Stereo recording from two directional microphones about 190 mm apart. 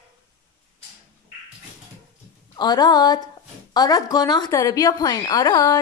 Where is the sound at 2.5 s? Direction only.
20° left (ahead or behind).